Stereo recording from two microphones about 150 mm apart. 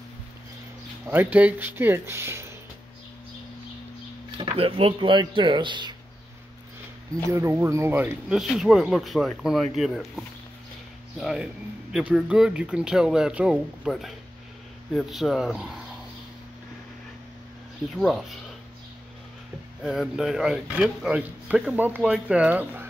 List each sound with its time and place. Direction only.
1.0 s speech: 10° right (ahead or behind)
4.4 s speech: 35° right (ahead or behind)
7.2 s speech: 15° right (ahead or behind)
17.9 s speech: centre (ahead or behind)
19.8 s speech: 5° right (ahead or behind)